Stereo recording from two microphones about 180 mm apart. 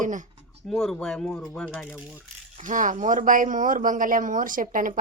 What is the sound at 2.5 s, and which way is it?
A woman's voice, 45° right (ahead or behind).